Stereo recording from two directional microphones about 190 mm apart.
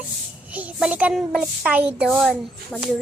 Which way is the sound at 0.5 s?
5° right (ahead or behind).